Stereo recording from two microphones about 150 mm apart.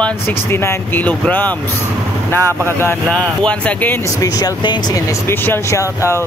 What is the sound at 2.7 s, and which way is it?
Speech, 15° left (ahead or behind).